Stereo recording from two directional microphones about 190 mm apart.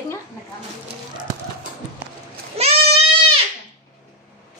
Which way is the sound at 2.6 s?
30° right (ahead or behind).